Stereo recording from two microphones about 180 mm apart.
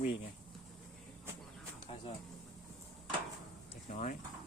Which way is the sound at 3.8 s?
40° left (ahead or behind).